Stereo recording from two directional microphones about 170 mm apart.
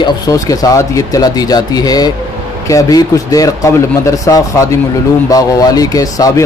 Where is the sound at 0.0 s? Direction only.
20° left (ahead or behind).